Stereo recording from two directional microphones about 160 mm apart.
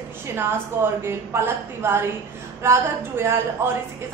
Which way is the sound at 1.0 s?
15° right (ahead or behind).